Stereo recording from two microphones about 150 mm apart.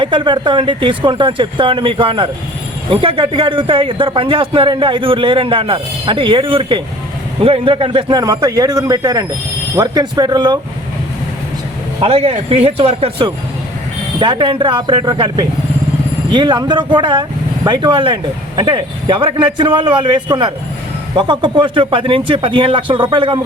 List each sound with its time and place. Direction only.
0.0 s a man's voice: 35° right (ahead or behind)
11.9 s speech: 40° right (ahead or behind)